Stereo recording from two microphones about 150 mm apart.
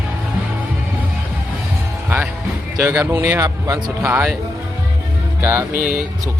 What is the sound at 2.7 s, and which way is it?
Speech, 20° right (ahead or behind).